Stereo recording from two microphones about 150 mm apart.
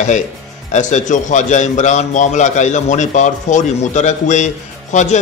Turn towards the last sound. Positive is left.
turn(degrees=55)  # may be behind; listen again after turning